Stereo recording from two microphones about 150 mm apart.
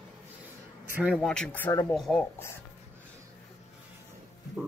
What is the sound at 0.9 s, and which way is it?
Speech, 5° right (ahead or behind).